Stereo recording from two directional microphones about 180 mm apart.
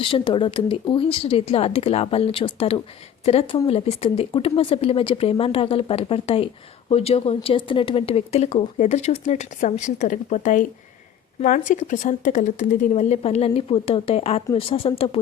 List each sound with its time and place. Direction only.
0.0 s speech: 30° left (ahead or behind)